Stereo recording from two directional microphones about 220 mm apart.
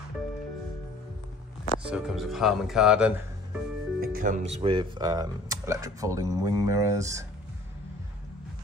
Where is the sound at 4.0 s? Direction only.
40° right (ahead or behind); by 7.2 s 15° right (ahead or behind).